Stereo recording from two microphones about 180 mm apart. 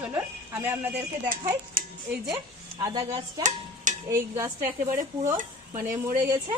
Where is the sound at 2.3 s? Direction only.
20° right (ahead or behind).